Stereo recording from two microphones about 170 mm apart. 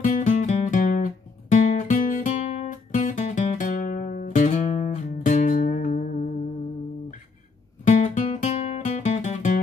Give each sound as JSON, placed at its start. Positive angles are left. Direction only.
{"t": 0.0, "sound": "guitar", "side_deg": 50}
{"t": 7.8, "sound": "music", "side_deg": 50}